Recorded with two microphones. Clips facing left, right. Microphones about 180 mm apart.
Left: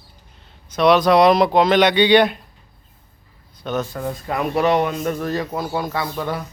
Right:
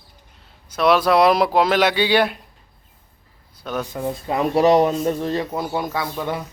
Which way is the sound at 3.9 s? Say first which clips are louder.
Right 1 dB; 15° right (ahead or behind).